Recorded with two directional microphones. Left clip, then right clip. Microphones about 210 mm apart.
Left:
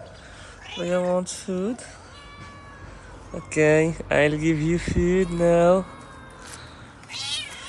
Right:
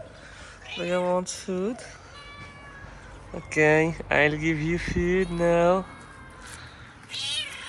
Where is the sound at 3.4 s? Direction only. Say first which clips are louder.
Left 2 dB; 15° left (ahead or behind).